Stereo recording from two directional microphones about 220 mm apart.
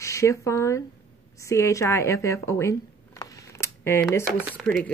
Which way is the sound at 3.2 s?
15° left (ahead or behind).